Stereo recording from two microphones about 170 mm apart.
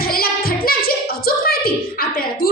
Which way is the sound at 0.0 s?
60° left (ahead or behind).